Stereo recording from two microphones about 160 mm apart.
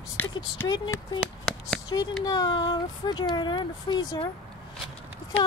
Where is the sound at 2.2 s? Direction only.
25° left (ahead or behind).